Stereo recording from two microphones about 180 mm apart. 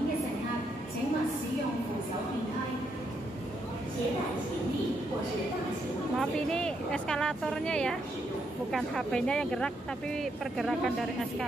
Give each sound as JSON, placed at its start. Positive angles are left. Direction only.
{"t": 6.1, "sound": "speech", "side_deg": 5}